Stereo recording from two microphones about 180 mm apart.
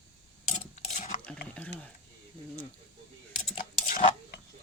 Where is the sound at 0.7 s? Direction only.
40° left (ahead or behind).